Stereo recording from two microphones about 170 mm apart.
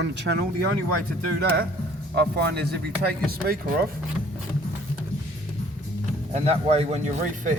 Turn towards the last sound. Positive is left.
turn(degrees=-45)  # may be behind; listen again after turning